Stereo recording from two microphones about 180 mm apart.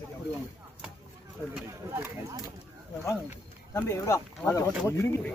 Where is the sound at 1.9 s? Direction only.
15° right (ahead or behind).